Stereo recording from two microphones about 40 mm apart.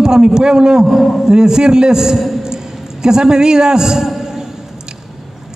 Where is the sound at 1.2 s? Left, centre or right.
Centre.